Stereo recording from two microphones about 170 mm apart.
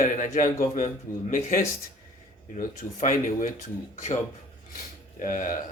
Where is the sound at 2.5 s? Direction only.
50° left (ahead or behind).